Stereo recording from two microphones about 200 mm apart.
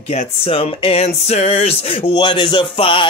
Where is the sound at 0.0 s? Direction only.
30° left (ahead or behind).